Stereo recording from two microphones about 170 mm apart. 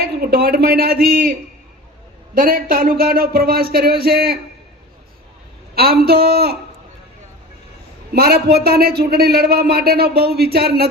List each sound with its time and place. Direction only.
0.0 s speech: 65° right (ahead or behind)
2.3 s speech: 55° right (ahead or behind)
5.7 s a man's voice: 65° right (ahead or behind)
8.1 s a man's voice: 65° right (ahead or behind)